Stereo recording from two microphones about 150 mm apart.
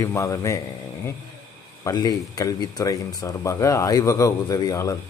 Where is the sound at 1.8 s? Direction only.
25° left (ahead or behind).